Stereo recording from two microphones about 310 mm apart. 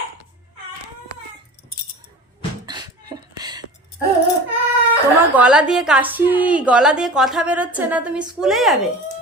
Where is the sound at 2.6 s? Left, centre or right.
Centre.